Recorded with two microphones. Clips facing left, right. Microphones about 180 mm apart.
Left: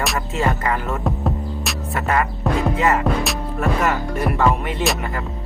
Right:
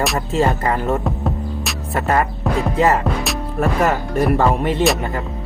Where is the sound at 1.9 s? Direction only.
35° right (ahead or behind).